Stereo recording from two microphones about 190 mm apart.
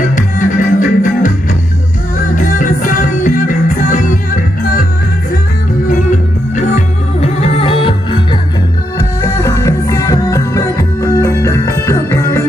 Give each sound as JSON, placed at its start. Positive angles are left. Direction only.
{"t": 0.1, "sound": "music", "side_deg": 45}
{"t": 2.3, "sound": "music", "side_deg": 45}
{"t": 7.2, "sound": "music", "side_deg": 30}
{"t": 9.2, "sound": "music", "side_deg": 15}